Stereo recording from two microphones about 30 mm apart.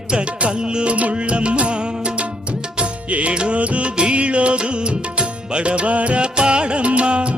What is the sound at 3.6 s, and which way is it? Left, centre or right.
Music, right.